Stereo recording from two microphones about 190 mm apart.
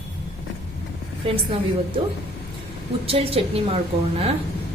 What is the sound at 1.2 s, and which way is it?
Speech, 25° right (ahead or behind).